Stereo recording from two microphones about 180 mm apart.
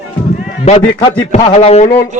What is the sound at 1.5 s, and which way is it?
Speech, 35° left (ahead or behind).